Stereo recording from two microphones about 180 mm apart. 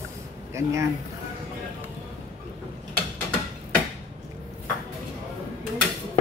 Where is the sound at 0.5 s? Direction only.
15° right (ahead or behind).